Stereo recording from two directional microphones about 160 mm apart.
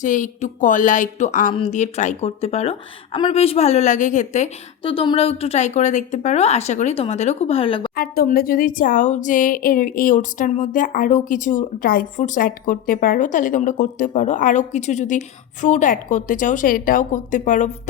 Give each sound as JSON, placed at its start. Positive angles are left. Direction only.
{"t": 0.0, "sound": "a woman's voice", "side_deg": 50}
{"t": 4.8, "sound": "a woman's voice", "side_deg": 35}
{"t": 7.9, "sound": "a woman's voice", "side_deg": 70}